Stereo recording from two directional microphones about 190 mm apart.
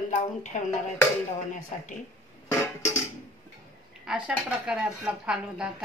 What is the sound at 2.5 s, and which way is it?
Music, 15° left (ahead or behind).